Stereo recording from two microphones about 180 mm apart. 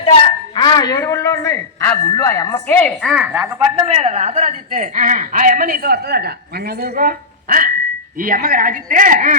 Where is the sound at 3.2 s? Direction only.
10° right (ahead or behind).